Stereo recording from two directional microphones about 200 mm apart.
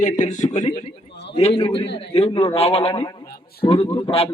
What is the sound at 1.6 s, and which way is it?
Speech, 25° left (ahead or behind).